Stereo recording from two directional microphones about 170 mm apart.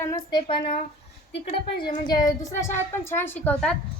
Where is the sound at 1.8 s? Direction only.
25° left (ahead or behind); by 3.7 s 5° left (ahead or behind).